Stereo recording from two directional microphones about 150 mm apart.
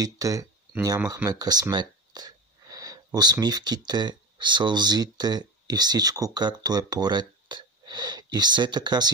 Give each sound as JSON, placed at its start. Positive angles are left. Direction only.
{"t": 0.0, "sound": "speech", "side_deg": -20}